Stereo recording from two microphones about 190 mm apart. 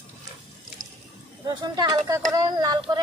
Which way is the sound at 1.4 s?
20° right (ahead or behind).